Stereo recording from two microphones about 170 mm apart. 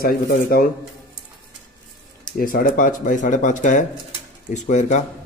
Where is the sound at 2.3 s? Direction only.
60° left (ahead or behind).